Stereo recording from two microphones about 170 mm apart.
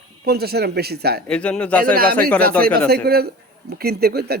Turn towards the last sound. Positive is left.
turn(degrees=-70)  # may be behind; listen again after turning